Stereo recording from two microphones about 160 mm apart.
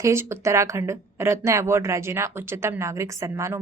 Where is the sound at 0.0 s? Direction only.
15° right (ahead or behind).